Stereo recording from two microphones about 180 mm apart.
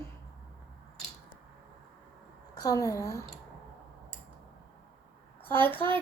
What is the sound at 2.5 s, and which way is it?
Speech, 20° left (ahead or behind).